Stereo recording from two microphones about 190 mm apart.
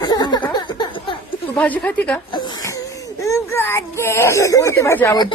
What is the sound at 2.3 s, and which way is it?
A child's voice, 25° left (ahead or behind).